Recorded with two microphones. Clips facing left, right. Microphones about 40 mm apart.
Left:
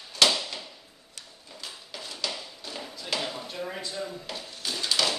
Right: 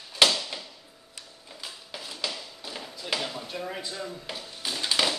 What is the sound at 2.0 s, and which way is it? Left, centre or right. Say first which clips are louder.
Tap: even; centre.